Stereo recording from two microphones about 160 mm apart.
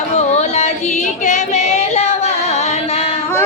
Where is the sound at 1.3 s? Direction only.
40° left (ahead or behind).